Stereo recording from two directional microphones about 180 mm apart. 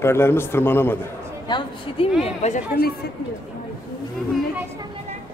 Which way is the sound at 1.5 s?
25° left (ahead or behind).